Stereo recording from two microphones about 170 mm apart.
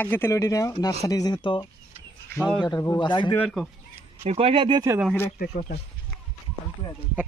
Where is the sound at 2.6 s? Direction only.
20° left (ahead or behind).